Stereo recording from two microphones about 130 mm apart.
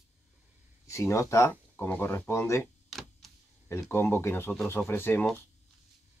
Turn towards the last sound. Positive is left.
turn(degrees=15)  # may be behind; listen again after turning